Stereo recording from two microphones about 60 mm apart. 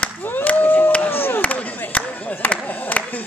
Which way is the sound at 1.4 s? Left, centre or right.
Left.